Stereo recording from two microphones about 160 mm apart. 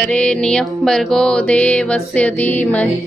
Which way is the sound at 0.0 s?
5° left (ahead or behind).